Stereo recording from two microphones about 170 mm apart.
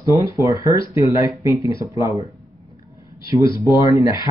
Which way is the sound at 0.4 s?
20° right (ahead or behind).